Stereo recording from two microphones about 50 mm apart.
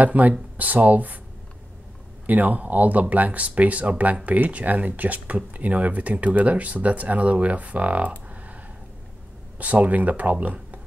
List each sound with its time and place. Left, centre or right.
0.0 s speech: right
2.2 s speech: right
9.6 s speech: right